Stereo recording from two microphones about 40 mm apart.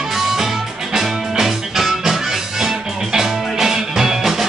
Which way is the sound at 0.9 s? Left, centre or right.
Centre.